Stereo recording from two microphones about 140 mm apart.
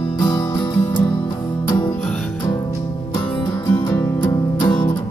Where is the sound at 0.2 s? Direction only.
30° left (ahead or behind).